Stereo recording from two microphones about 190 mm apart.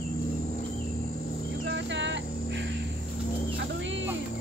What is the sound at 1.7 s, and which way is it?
Cricket, 70° right (ahead or behind).